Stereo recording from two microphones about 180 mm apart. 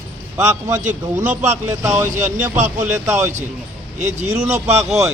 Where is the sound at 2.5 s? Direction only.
40° right (ahead or behind).